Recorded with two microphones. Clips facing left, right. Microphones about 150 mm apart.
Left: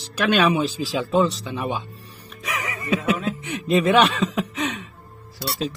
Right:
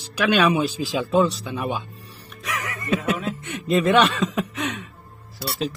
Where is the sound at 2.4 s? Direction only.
5° left (ahead or behind).